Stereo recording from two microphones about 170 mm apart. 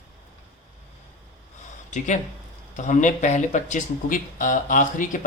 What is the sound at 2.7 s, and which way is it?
Speech, 50° left (ahead or behind).